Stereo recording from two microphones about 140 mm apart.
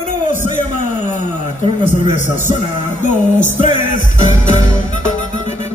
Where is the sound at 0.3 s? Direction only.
60° left (ahead or behind).